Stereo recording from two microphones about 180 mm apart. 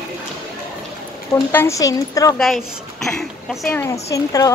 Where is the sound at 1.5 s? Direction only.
15° left (ahead or behind).